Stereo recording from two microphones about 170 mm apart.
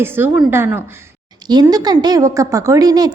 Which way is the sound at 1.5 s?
25° right (ahead or behind).